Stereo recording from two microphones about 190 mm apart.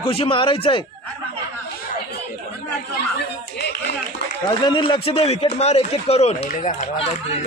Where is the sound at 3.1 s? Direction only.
60° left (ahead or behind).